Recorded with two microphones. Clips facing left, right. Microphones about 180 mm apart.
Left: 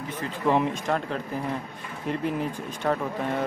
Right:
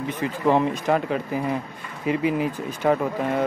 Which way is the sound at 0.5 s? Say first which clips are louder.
Right 4 dB; centre (ahead or behind).